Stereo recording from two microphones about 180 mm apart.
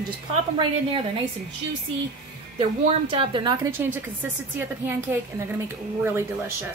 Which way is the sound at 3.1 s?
25° right (ahead or behind).